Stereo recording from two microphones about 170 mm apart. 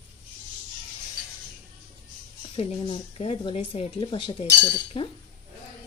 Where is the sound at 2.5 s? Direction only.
35° left (ahead or behind).